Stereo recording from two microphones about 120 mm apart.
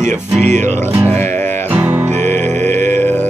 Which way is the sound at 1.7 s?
15° right (ahead or behind).